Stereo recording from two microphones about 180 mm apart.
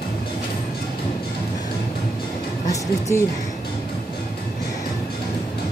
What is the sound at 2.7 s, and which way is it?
Speech, 15° left (ahead or behind).